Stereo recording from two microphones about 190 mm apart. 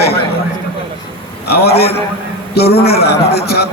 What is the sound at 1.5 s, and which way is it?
A man's voice, 55° left (ahead or behind).